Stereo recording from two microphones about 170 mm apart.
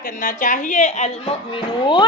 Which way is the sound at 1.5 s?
25° left (ahead or behind).